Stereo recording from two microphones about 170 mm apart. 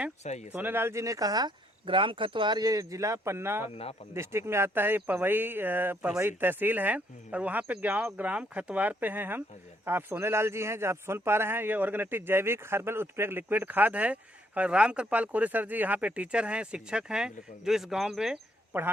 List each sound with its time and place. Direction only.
0.3 s speech: 40° left (ahead or behind)
0.5 s a man's voice: 10° right (ahead or behind)